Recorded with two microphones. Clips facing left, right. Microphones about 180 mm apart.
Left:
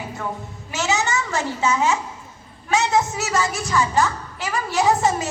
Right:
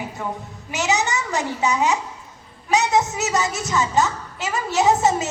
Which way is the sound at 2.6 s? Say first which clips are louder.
Right 1 dB; 20° right (ahead or behind).